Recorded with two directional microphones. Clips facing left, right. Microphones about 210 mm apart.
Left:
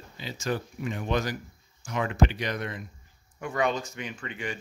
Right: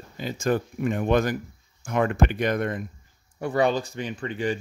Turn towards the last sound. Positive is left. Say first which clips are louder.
# right 8 dB
turn(degrees=-35)  # may be behind; listen again after turning